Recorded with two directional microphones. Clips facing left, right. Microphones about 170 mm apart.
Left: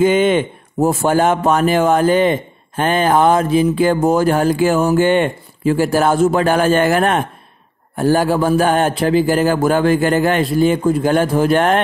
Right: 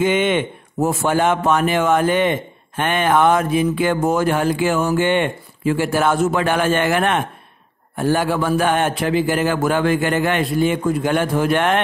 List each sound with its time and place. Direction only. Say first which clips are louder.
0.0 s mantra: left 4 dB; 35° left (ahead or behind)